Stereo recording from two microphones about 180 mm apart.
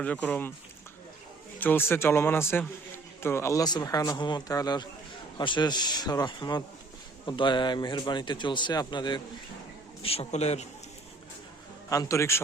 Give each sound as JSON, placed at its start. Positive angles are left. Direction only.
{"t": 0.0, "sound": "a man's voice", "side_deg": 10}
{"t": 1.5, "sound": "a man's voice", "side_deg": 10}
{"t": 11.9, "sound": "a man's voice", "side_deg": 15}